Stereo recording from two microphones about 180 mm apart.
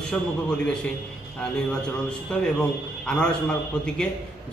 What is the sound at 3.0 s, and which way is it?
Speech, 5° left (ahead or behind).